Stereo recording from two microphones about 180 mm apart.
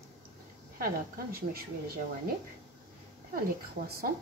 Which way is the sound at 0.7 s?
55° right (ahead or behind).